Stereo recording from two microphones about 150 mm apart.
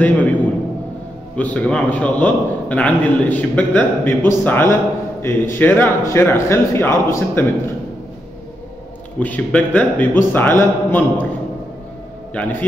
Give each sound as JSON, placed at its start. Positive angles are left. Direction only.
{"t": 0.0, "sound": "a sound", "side_deg": 10}
{"t": 1.3, "sound": "a man's voice", "side_deg": 10}
{"t": 9.2, "sound": "a man's voice", "side_deg": 10}
{"t": 12.4, "sound": "a man's voice", "side_deg": 10}